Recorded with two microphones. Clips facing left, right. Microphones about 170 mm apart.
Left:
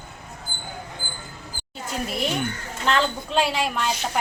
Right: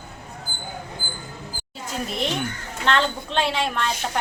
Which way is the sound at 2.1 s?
5° left (ahead or behind).